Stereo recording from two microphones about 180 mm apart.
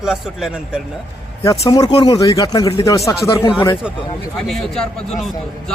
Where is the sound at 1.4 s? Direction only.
20° left (ahead or behind).